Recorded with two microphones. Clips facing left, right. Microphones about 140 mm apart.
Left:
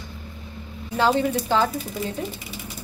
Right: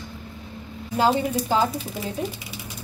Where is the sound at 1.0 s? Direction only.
10° right (ahead or behind).